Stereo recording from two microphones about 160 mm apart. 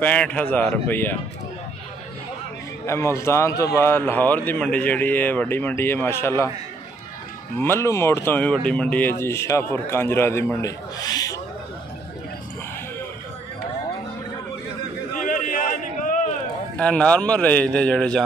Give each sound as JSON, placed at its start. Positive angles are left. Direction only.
{"t": 0.0, "sound": "speech", "side_deg": 10}
{"t": 2.9, "sound": "speech", "side_deg": 15}
{"t": 7.5, "sound": "speech", "side_deg": 15}
{"t": 15.1, "sound": "a sound", "side_deg": 55}
{"t": 16.7, "sound": "speech", "side_deg": 5}